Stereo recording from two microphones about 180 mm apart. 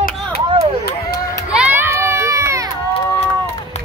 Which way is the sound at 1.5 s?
10° right (ahead or behind).